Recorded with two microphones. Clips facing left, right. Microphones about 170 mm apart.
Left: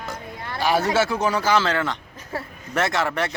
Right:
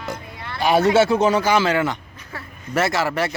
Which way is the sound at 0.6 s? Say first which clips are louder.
Right 5 dB; 20° right (ahead or behind).